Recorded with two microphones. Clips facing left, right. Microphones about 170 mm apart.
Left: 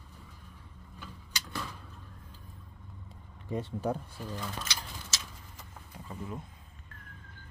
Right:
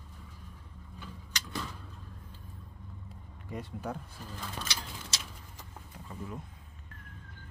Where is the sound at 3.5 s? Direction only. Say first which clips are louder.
Left 6 dB; 30° left (ahead or behind).